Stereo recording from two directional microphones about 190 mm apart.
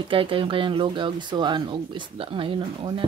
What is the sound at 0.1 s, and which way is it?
A child's voice, 30° right (ahead or behind).